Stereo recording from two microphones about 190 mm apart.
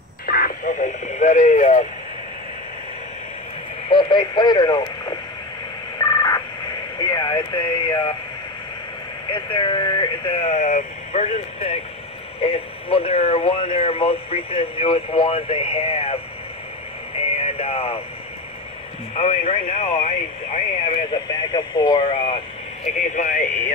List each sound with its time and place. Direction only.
0.3 s speech: 45° left (ahead or behind)
3.9 s speech: 25° left (ahead or behind)
5.9 s telephone dialing: 20° left (ahead or behind)
7.0 s a sound: 25° left (ahead or behind)
9.3 s speech: 25° left (ahead or behind)
17.6 s a sound: 30° left (ahead or behind)
19.1 s speech: 30° left (ahead or behind)
22.8 s speech: 40° left (ahead or behind)